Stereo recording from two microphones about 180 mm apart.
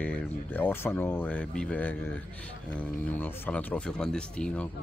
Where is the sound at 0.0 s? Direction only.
10° left (ahead or behind).